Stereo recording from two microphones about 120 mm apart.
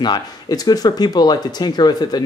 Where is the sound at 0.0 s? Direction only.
35° left (ahead or behind).